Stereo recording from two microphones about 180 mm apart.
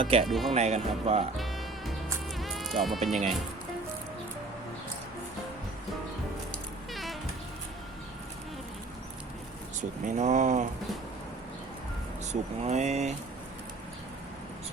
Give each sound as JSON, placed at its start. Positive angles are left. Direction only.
{"t": 0.0, "sound": "speech", "side_deg": -35}
{"t": 0.3, "sound": "speech", "side_deg": 0}
{"t": 0.5, "sound": "speech", "side_deg": -35}
{"t": 1.4, "sound": "music", "side_deg": 0}
{"t": 2.4, "sound": "insect", "side_deg": 0}
{"t": 6.9, "sound": "music", "side_deg": 0}
{"t": 10.1, "sound": "speech", "side_deg": -40}
{"t": 12.3, "sound": "speech", "side_deg": -40}